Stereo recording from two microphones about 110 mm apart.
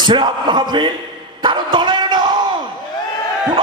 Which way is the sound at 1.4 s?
45° right (ahead or behind).